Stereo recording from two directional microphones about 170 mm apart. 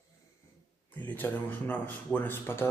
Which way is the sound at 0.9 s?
10° left (ahead or behind).